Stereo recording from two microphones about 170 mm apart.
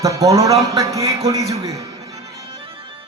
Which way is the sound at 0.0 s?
20° right (ahead or behind).